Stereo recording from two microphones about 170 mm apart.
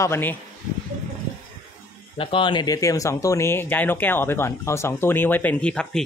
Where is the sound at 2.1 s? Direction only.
30° left (ahead or behind); by 6.0 s 5° left (ahead or behind).